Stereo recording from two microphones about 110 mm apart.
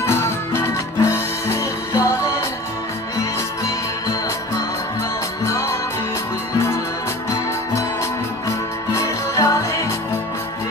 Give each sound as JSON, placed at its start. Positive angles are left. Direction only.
{"t": 0.0, "sound": "music", "side_deg": 25}
{"t": 9.3, "sound": "music", "side_deg": 30}